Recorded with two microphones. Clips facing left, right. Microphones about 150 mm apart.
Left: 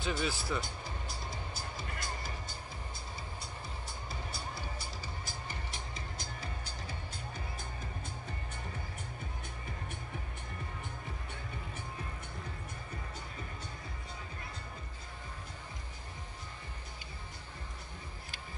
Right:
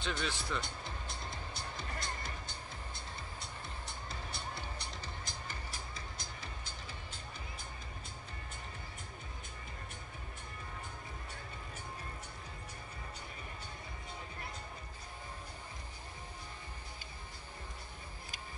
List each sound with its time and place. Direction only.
0.0 s speech: 5° left (ahead or behind)
1.3 s music: centre (ahead or behind)
5.5 s music: 20° left (ahead or behind)